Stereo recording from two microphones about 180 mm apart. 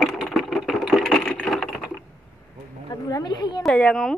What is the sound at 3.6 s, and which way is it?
Speech, 5° left (ahead or behind).